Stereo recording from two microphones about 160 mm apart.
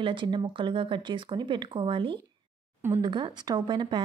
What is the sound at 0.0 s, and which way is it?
Speech, 30° right (ahead or behind).